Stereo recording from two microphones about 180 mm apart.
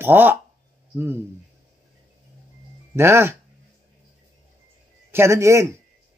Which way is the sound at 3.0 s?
15° right (ahead or behind).